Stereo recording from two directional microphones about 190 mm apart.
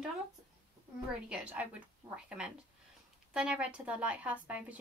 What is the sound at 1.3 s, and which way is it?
Speech, 5° right (ahead or behind).